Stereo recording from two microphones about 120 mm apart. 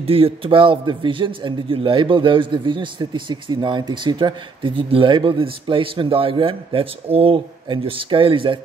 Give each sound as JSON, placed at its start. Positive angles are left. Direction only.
{"t": 0.0, "sound": "a man's voice", "side_deg": -50}